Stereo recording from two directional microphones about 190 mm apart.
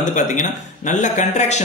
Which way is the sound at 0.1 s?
40° left (ahead or behind).